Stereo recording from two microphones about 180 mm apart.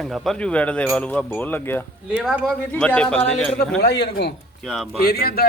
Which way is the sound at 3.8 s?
65° left (ahead or behind).